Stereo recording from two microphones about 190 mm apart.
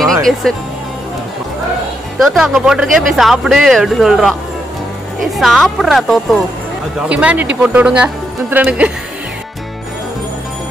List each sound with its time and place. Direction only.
0.0 s music: centre (ahead or behind)
2.1 s speech: centre (ahead or behind)